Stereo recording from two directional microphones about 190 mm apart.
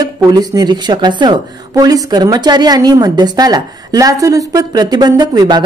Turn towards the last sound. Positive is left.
turn(degrees=-20)  # may be behind; listen again after turning